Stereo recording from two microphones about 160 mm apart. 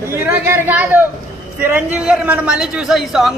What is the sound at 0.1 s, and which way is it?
A man's voice, 15° right (ahead or behind).